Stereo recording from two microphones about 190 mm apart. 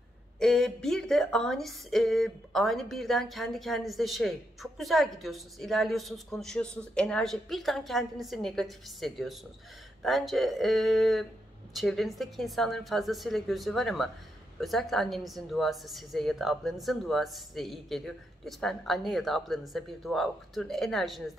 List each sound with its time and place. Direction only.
0.4 s a woman's voice: centre (ahead or behind)